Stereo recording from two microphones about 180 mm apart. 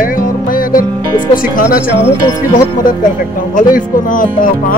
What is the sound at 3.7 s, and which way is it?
Speech, 50° left (ahead or behind).